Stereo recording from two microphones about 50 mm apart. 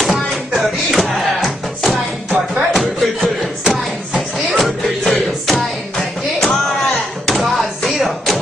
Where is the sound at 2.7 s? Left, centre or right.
Centre.